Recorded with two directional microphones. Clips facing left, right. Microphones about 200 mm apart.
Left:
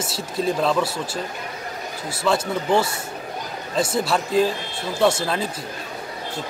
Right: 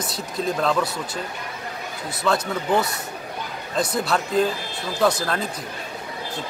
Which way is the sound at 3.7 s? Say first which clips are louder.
Left 1 dB; 5° left (ahead or behind).